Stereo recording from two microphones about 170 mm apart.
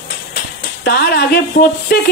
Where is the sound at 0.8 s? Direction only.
70° left (ahead or behind).